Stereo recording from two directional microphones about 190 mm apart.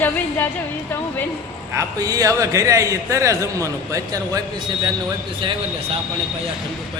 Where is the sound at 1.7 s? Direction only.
20° right (ahead or behind).